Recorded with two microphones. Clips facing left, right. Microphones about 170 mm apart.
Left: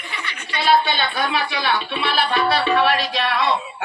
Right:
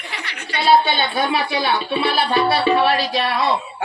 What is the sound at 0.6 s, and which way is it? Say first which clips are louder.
Speech: right 2 dB; 25° right (ahead or behind).